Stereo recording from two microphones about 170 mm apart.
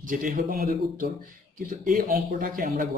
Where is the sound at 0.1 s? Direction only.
55° right (ahead or behind).